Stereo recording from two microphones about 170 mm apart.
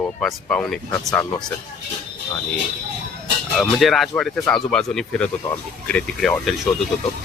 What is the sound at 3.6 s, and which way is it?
Speech, centre (ahead or behind).